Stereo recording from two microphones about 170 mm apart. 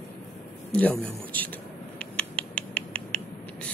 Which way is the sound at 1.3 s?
10° left (ahead or behind).